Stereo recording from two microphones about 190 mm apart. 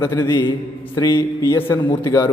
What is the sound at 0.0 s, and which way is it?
A man's voice, 15° left (ahead or behind).